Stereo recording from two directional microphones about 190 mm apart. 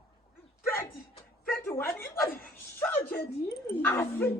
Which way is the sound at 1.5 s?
10° left (ahead or behind).